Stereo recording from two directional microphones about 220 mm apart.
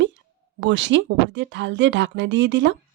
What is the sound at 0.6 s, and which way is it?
Speech, 55° right (ahead or behind).